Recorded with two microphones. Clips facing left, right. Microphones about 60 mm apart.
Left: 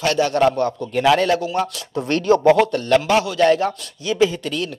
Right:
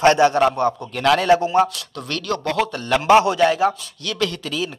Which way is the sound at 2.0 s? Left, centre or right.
Left.